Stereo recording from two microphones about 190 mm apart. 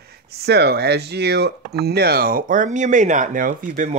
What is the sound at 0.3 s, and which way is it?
Speech, 60° right (ahead or behind).